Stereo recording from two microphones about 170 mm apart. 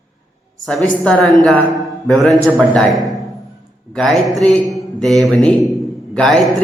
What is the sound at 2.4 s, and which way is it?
Speech, 15° right (ahead or behind).